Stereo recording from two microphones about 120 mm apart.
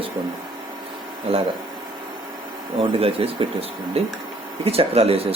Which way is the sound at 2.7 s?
50° right (ahead or behind).